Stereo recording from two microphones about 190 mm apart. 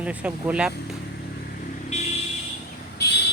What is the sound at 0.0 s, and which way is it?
Speech, 5° right (ahead or behind).